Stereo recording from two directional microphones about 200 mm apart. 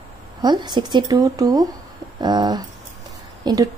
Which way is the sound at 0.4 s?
20° right (ahead or behind).